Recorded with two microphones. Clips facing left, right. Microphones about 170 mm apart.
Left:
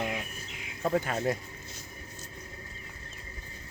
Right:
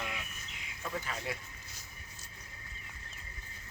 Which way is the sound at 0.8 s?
50° left (ahead or behind).